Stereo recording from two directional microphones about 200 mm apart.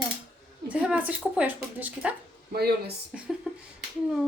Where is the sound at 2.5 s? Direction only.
50° right (ahead or behind).